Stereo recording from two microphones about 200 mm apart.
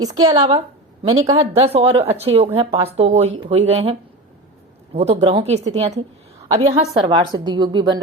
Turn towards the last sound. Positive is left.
turn(degrees=-20)  # may be behind; listen again after turning